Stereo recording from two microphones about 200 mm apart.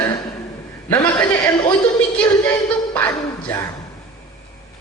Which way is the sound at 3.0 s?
5° left (ahead or behind).